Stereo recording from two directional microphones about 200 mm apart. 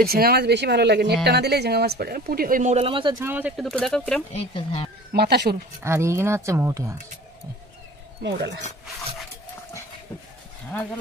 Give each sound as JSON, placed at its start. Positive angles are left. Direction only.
{"t": 0.0, "sound": "speech", "side_deg": -50}
{"t": 3.2, "sound": "speech", "side_deg": -10}
{"t": 4.3, "sound": "speech", "side_deg": 30}
{"t": 5.1, "sound": "speech", "side_deg": -55}
{"t": 5.8, "sound": "speech", "side_deg": -15}
{"t": 8.2, "sound": "speech", "side_deg": -60}